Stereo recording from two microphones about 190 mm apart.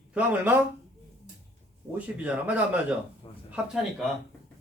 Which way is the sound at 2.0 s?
10° right (ahead or behind).